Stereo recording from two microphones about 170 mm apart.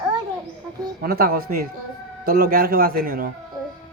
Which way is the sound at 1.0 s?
60° right (ahead or behind).